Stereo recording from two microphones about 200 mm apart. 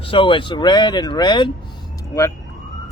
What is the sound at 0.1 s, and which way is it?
Speech, 25° left (ahead or behind).